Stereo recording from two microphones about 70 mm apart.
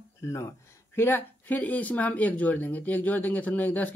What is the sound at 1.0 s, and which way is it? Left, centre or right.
Speech, left.